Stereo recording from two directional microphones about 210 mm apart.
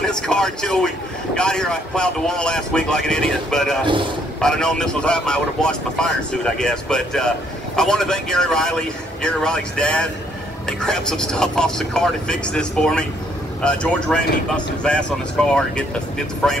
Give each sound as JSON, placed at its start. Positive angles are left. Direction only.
{"t": 0.0, "sound": "speech", "side_deg": 5}
{"t": 3.8, "sound": "a man's voice", "side_deg": -25}
{"t": 4.4, "sound": "speech", "side_deg": 5}